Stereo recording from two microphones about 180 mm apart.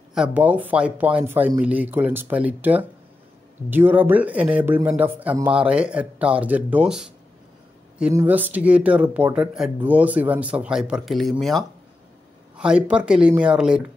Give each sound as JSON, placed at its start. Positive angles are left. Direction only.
{"t": 0.1, "sound": "speech", "side_deg": -5}